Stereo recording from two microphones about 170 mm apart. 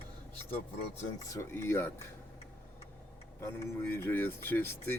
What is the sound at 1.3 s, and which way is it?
Speech, 15° left (ahead or behind).